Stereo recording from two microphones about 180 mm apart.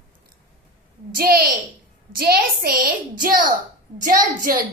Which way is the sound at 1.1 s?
55° right (ahead or behind).